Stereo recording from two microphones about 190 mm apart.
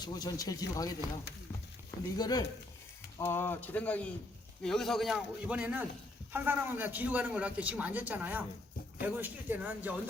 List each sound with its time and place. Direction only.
0.0 s speech: 20° left (ahead or behind)
2.1 s a man's voice: 20° left (ahead or behind); by 9.9 s 10° right (ahead or behind)